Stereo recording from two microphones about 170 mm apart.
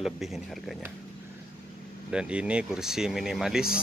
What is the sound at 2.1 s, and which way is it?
Speech, 5° right (ahead or behind).